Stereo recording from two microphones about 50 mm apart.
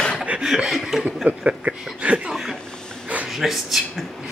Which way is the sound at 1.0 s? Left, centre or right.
Right.